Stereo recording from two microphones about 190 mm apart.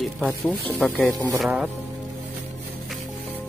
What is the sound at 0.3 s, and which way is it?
Speech, 10° left (ahead or behind).